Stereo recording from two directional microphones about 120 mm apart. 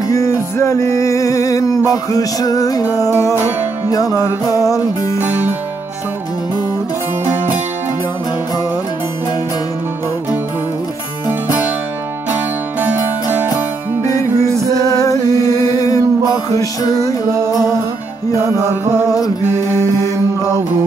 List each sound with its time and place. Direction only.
0.1 s music: 25° left (ahead or behind)
11.2 s music: 15° right (ahead or behind)
12.8 s music: 15° right (ahead or behind)
14.0 s music: 25° left (ahead or behind)
14.6 s music: 25° right (ahead or behind)
14.9 s music: 30° left (ahead or behind)
19.7 s music: 20° left (ahead or behind)